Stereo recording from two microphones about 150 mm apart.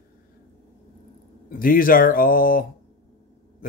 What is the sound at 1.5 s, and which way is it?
Speech, 70° left (ahead or behind).